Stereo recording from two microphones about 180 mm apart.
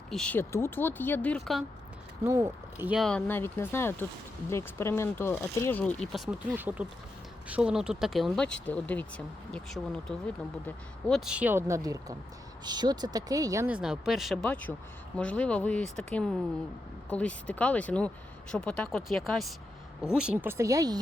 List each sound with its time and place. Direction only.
0.1 s speech: 5° left (ahead or behind)
2.2 s speech: 15° right (ahead or behind)
3.0 s speech: 5° left (ahead or behind)
11.3 s speech: 10° right (ahead or behind)
13.7 s speech: 5° right (ahead or behind)